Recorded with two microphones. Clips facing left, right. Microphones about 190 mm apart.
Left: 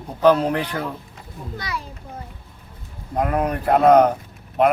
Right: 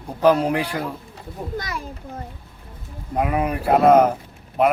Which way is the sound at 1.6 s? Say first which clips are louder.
Left 3 dB; 45° right (ahead or behind).